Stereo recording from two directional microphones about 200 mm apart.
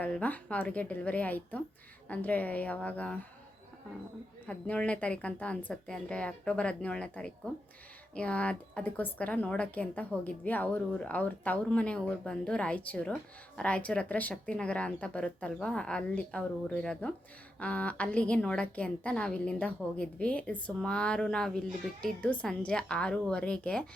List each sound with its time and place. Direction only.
0.0 s a woman's voice: 5° left (ahead or behind)
4.4 s a woman's voice: 5° left (ahead or behind)